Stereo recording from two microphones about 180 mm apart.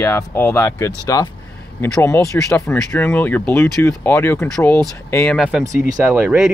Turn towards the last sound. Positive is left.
turn(degrees=-5)  # may be behind; listen again after turning